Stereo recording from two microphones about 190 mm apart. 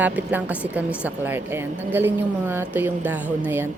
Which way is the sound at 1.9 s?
10° right (ahead or behind).